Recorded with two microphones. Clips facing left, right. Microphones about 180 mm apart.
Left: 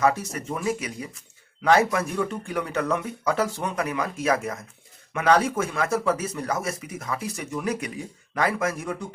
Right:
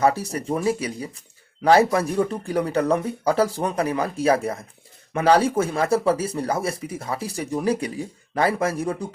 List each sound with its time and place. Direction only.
0.0 s speech: 35° right (ahead or behind)